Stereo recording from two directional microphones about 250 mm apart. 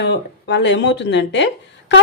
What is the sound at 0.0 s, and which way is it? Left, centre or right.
A woman's voice, left.